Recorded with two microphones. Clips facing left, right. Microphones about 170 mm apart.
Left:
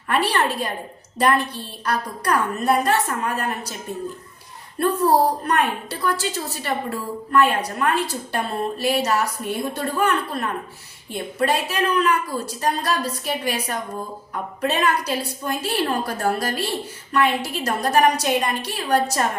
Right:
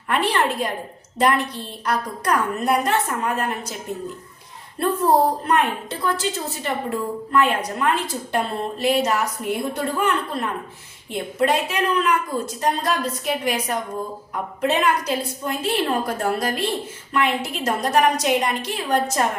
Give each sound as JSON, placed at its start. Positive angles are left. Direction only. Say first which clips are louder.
{"t": 0.1, "sound": "a woman's voice", "louder": "even", "side_deg": -20}
{"t": 4.8, "sound": "a woman's voice", "louder": "even", "side_deg": -25}